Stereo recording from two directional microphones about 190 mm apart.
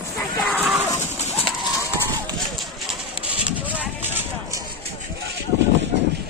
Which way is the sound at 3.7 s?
10° right (ahead or behind).